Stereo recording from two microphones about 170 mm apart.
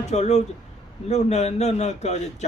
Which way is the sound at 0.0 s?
40° left (ahead or behind).